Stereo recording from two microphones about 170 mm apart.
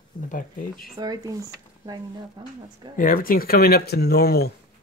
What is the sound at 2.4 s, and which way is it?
Speech, 25° right (ahead or behind).